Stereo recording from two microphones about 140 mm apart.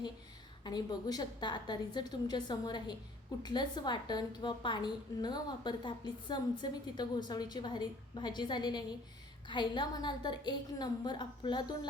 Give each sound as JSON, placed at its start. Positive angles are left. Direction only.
{"t": 0.6, "sound": "a woman's voice", "side_deg": 30}